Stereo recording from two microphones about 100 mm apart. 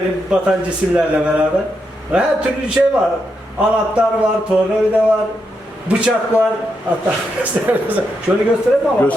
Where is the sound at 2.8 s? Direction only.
20° right (ahead or behind).